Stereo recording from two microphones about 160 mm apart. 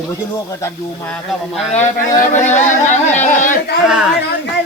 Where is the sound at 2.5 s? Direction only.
50° left (ahead or behind).